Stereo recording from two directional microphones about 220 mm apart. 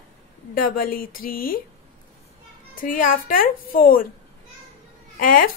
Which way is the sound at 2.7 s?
40° left (ahead or behind).